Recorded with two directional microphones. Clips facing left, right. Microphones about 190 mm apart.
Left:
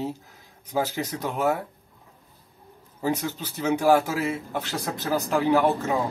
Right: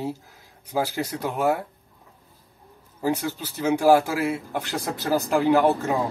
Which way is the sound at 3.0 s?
10° right (ahead or behind).